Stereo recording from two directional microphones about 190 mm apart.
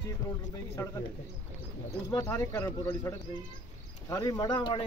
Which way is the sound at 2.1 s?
15° left (ahead or behind).